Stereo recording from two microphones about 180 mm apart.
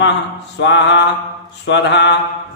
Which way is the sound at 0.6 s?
75° left (ahead or behind).